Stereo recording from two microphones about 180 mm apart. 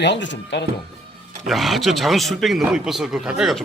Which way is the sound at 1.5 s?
Centre (ahead or behind).